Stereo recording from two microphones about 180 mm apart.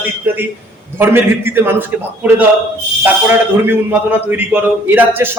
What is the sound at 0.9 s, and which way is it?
A man's voice, 15° right (ahead or behind).